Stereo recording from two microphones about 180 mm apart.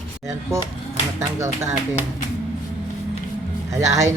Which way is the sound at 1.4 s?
15° right (ahead or behind).